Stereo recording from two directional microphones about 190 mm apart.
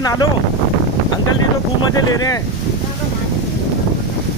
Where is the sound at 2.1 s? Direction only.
20° left (ahead or behind).